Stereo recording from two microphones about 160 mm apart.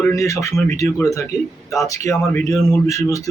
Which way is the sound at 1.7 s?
20° left (ahead or behind).